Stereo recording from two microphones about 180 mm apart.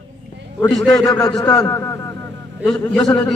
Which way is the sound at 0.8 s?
Centre (ahead or behind).